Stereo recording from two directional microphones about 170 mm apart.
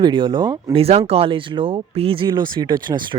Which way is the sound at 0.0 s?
25° right (ahead or behind).